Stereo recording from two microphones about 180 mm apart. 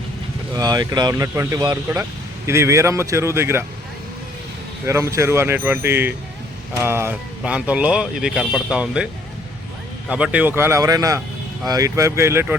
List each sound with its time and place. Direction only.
0.5 s speech: 20° right (ahead or behind)
4.9 s speech: 15° right (ahead or behind)
10.1 s speech: 5° right (ahead or behind)